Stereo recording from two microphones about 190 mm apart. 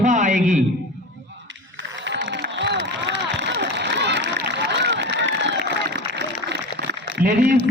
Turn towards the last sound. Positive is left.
turn(degrees=-45)  # may be behind; listen again after turning